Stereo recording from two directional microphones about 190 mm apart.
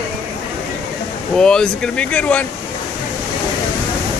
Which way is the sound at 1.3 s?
5° left (ahead or behind).